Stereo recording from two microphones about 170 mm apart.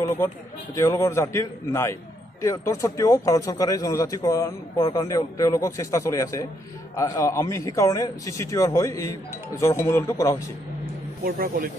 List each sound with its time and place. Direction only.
0.7 s a man's voice: 15° left (ahead or behind)
11.2 s a man's voice: 60° right (ahead or behind)